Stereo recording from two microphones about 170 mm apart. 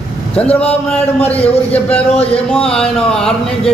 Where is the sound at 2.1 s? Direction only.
35° left (ahead or behind).